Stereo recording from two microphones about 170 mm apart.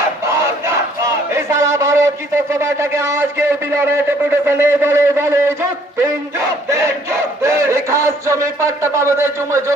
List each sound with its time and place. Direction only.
1.3 s a man's voice: 15° right (ahead or behind)
6.7 s battle cry: 15° right (ahead or behind)
8.8 s a man's voice: 15° right (ahead or behind)